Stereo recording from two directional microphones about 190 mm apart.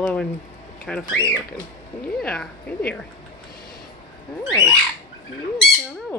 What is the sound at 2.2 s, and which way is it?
Speech, 5° left (ahead or behind).